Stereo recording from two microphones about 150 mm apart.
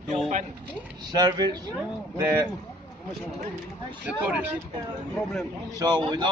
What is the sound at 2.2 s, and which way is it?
Speech, 15° right (ahead or behind).